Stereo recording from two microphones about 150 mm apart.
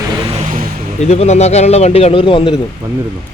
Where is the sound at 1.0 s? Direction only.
45° left (ahead or behind).